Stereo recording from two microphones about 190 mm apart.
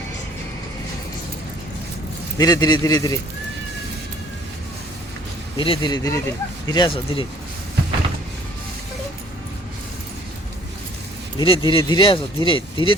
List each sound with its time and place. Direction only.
2.4 s speech: 20° left (ahead or behind)
5.5 s speech: 25° left (ahead or behind)
11.3 s speech: 25° left (ahead or behind)